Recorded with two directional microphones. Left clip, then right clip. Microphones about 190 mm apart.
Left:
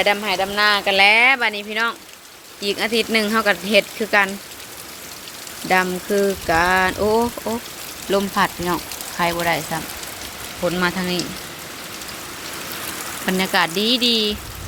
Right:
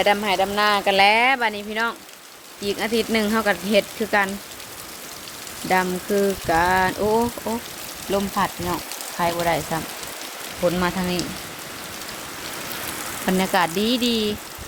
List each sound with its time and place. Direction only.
0.0 s speech: 20° right (ahead or behind)
5.6 s speech: centre (ahead or behind)
7.1 s speech: 15° left (ahead or behind); by 11.2 s 10° right (ahead or behind)
13.2 s speech: 10° right (ahead or behind)